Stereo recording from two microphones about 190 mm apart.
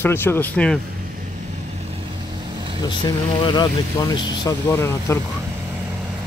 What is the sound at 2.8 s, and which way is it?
Speech, 20° left (ahead or behind).